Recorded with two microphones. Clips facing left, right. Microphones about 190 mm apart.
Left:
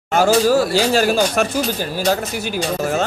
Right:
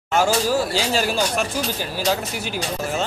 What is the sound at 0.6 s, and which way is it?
Speech, 55° left (ahead or behind).